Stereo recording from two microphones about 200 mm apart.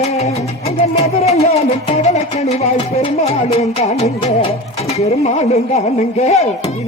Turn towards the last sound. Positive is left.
turn(degrees=30)  # may be behind; listen again after turning